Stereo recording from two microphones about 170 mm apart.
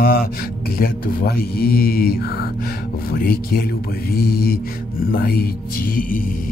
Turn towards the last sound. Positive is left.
turn(degrees=55)  # may be behind; listen again after turning